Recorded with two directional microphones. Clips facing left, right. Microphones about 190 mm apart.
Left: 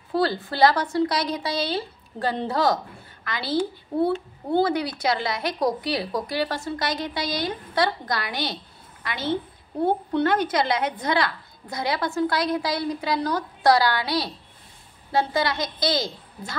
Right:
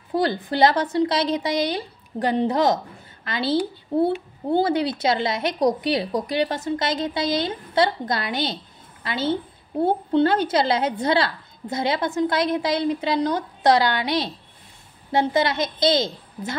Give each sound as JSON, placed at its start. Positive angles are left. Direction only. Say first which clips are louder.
{"t": 0.1, "sound": "a woman's voice", "louder": "right 2 dB", "side_deg": -20}
{"t": 4.6, "sound": "a woman's voice", "louder": "right 3 dB", "side_deg": -25}